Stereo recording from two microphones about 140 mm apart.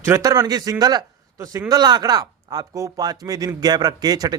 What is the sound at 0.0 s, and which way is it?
A man's voice, 20° right (ahead or behind).